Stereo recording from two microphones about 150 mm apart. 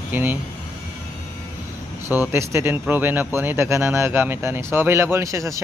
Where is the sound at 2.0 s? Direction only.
15° right (ahead or behind).